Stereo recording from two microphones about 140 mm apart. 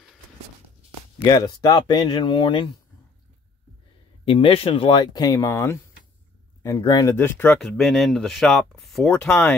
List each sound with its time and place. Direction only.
1.2 s speech: 30° left (ahead or behind)
4.2 s speech: 40° left (ahead or behind)
7.2 s speech: 15° left (ahead or behind)
7.6 s speech: centre (ahead or behind)